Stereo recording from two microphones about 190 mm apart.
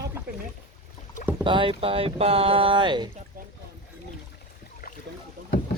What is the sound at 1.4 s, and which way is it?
Speech, 25° right (ahead or behind).